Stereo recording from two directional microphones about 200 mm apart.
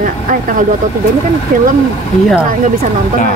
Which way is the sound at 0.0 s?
40° right (ahead or behind).